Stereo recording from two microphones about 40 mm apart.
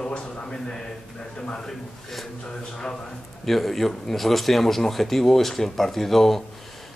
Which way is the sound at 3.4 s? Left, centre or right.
Centre.